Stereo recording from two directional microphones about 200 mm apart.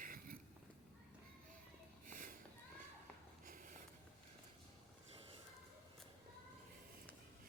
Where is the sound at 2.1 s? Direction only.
45° right (ahead or behind).